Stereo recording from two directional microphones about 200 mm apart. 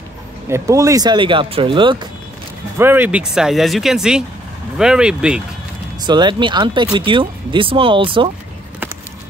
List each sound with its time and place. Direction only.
0.5 s speech: 15° right (ahead or behind)
2.8 s speech: 10° right (ahead or behind)
6.0 s speech: 25° right (ahead or behind)